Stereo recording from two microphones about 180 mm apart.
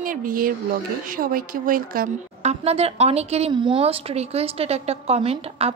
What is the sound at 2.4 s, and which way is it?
A woman's voice, 35° right (ahead or behind).